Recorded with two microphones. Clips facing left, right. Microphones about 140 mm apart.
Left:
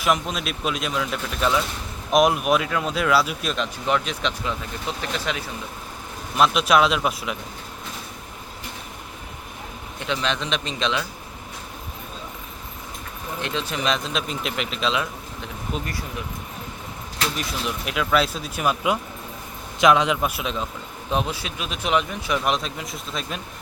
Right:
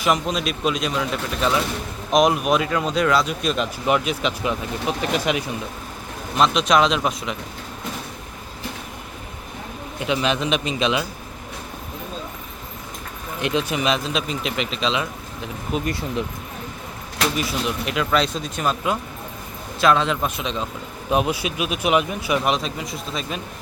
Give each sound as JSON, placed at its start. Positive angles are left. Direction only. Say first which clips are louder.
{"t": 0.0, "sound": "speech", "louder": "right 2 dB", "side_deg": 0}
{"t": 6.3, "sound": "speech", "louder": "right 1 dB", "side_deg": 5}
{"t": 10.1, "sound": "speech", "louder": "right 4 dB", "side_deg": -10}
{"t": 13.4, "sound": "speech", "louder": "right 5 dB", "side_deg": -15}
{"t": 15.9, "sound": "speech", "louder": "right 7 dB", "side_deg": -25}
{"t": 17.3, "sound": "a man's voice", "louder": "right 4 dB", "side_deg": 0}
{"t": 21.1, "sound": "speech", "louder": "right 4 dB", "side_deg": -10}